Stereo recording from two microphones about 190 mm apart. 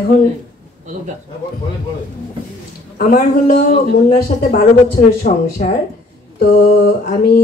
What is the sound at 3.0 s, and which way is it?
Speech, 45° left (ahead or behind).